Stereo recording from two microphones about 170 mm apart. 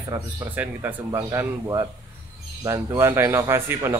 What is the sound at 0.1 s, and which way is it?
Speech, 10° right (ahead or behind).